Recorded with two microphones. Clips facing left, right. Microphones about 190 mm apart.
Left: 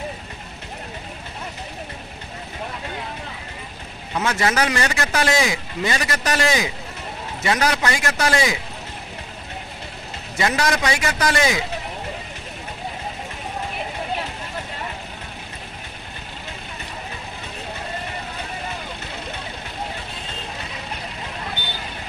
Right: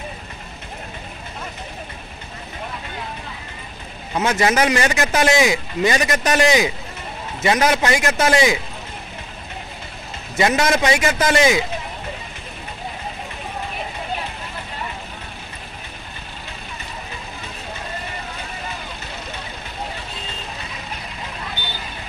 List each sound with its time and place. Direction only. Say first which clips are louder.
4.2 s speech: right 3 dB; 20° right (ahead or behind)
10.3 s speech: right 4 dB; 20° right (ahead or behind)